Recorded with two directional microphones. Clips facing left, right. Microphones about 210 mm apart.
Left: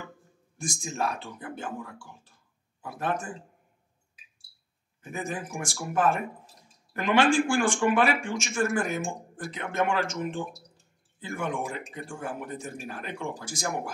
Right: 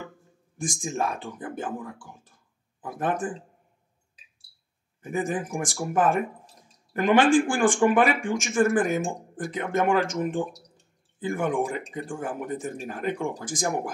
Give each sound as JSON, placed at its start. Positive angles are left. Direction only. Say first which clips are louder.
{"t": 0.6, "sound": "speech", "louder": "right 3 dB", "side_deg": -50}
{"t": 2.8, "sound": "speech", "louder": "right 3 dB", "side_deg": -50}
{"t": 5.1, "sound": "speech", "louder": "right 6 dB", "side_deg": -50}